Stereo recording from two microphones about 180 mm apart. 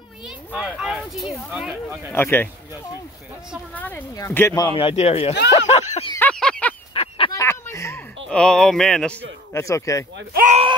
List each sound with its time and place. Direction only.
0.5 s speech: 5° right (ahead or behind)
2.1 s speech: 10° left (ahead or behind); by 5.3 s 35° left (ahead or behind)
5.7 s a sound: 35° left (ahead or behind)
6.1 s a sound: 5° left (ahead or behind)
6.9 s honk: 30° left (ahead or behind)
7.3 s a sound: 15° left (ahead or behind)
8.3 s speech: 5° left (ahead or behind)
9.5 s speech: 15° left (ahead or behind)
10.4 s speech: 40° right (ahead or behind)